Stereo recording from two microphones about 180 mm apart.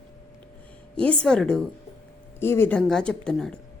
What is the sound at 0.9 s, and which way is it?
A woman's voice, 5° left (ahead or behind).